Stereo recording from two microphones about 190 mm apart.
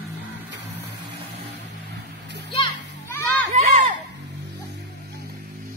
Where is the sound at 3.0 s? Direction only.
15° left (ahead or behind).